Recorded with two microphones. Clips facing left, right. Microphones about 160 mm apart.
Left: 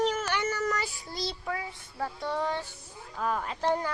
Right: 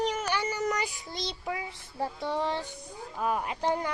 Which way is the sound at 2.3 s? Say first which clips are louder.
Even; 25° right (ahead or behind).